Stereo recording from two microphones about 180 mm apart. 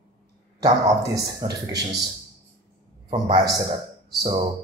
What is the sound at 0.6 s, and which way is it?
Speech, 20° right (ahead or behind).